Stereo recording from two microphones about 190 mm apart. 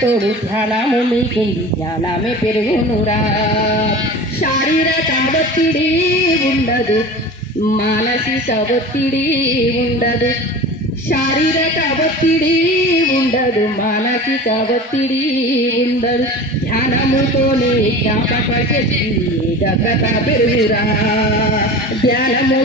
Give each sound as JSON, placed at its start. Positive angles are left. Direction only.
{"t": 22.0, "sound": "bleat", "side_deg": 50}